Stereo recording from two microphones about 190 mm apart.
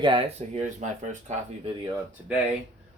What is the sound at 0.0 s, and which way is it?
Speech, 30° right (ahead or behind).